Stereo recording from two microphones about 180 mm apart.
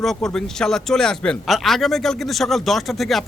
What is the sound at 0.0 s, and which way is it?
Speech, centre (ahead or behind).